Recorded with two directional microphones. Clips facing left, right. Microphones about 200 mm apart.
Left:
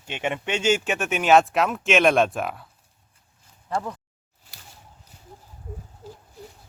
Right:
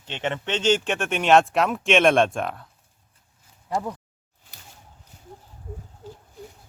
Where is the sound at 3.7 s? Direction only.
10° right (ahead or behind).